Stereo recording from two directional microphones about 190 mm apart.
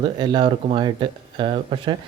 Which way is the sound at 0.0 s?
25° right (ahead or behind).